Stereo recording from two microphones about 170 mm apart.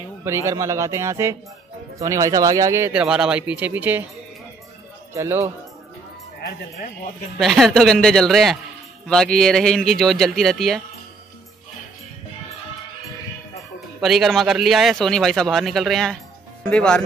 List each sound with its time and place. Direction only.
0.5 s speech: 20° right (ahead or behind)
2.9 s speech: 5° right (ahead or behind)
5.1 s speech: 15° right (ahead or behind)
7.3 s speech: centre (ahead or behind)
14.0 s speech: centre (ahead or behind)